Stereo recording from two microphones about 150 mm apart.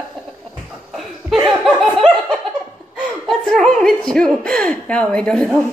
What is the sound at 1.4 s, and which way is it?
Laughter, centre (ahead or behind).